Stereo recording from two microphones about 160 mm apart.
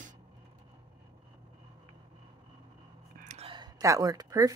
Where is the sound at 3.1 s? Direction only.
45° right (ahead or behind); by 4.5 s 20° right (ahead or behind).